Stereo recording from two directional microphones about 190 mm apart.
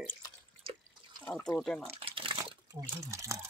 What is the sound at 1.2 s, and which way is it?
Speech, 5° left (ahead or behind).